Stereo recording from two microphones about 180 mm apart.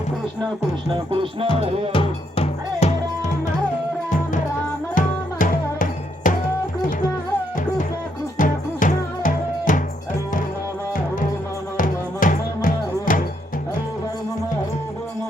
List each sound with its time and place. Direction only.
1.1 s music: 30° right (ahead or behind)
1.9 s music: 30° left (ahead or behind)
4.1 s music: 45° left (ahead or behind)
8.4 s music: 45° left (ahead or behind)
11.8 s music: 50° left (ahead or behind)